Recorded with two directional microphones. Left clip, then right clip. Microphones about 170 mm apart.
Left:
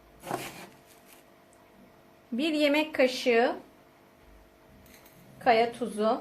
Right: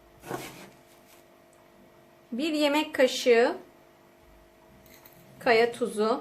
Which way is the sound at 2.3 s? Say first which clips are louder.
Even; 5° right (ahead or behind).